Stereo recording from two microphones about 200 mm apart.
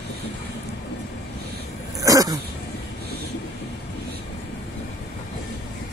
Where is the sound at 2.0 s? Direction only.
15° right (ahead or behind).